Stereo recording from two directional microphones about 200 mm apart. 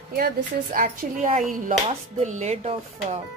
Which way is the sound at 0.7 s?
40° right (ahead or behind).